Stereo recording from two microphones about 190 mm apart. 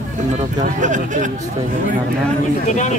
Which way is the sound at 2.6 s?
40° left (ahead or behind).